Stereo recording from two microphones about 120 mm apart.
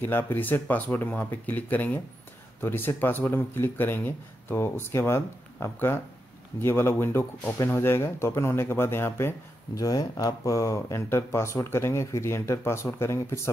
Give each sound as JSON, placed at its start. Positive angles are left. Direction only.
{"t": 0.0, "sound": "speech", "side_deg": 15}
{"t": 9.8, "sound": "speech", "side_deg": 30}